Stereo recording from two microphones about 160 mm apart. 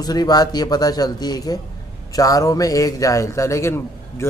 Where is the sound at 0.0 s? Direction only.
25° left (ahead or behind).